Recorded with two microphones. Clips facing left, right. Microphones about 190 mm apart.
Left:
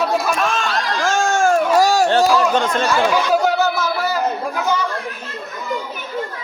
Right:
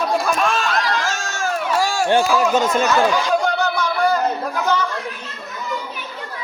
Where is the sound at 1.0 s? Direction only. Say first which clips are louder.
Left 8 dB; 50° left (ahead or behind).